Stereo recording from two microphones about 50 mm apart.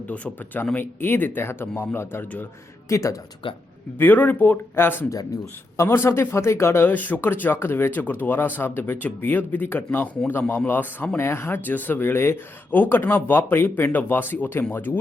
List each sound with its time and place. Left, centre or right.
0.1 s speech: left
2.9 s speech: left
3.9 s speech: left
4.7 s speech: left
5.7 s speech: left
6.8 s speech: left
11.2 s speech: left
12.7 s speech: left